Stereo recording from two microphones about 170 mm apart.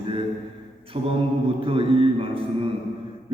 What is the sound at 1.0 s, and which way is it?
A man's voice, 30° right (ahead or behind).